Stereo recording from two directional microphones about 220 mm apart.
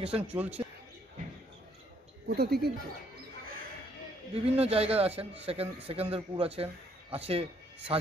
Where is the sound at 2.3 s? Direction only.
45° right (ahead or behind).